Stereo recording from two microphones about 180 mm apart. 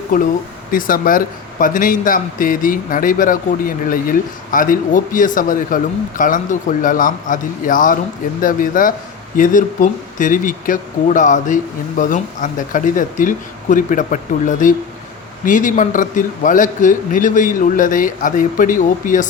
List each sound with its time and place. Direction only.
0.1 s a man's voice: 50° left (ahead or behind)